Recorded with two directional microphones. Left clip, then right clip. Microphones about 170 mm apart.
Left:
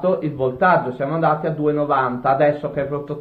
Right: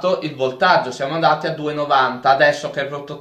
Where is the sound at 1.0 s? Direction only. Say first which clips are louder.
Even; 20° right (ahead or behind).